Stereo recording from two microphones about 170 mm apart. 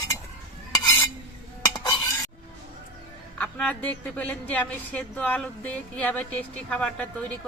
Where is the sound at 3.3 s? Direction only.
10° left (ahead or behind).